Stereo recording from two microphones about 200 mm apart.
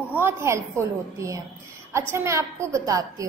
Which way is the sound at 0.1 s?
10° right (ahead or behind).